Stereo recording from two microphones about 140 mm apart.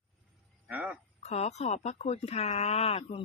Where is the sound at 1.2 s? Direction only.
50° left (ahead or behind).